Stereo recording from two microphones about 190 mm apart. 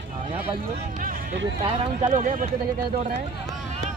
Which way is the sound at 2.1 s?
45° right (ahead or behind).